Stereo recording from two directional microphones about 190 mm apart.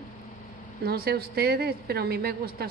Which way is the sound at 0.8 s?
55° right (ahead or behind).